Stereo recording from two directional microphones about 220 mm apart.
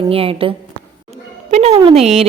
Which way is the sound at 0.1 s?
25° right (ahead or behind).